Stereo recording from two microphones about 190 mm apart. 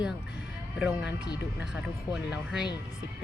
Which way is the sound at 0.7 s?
5° right (ahead or behind).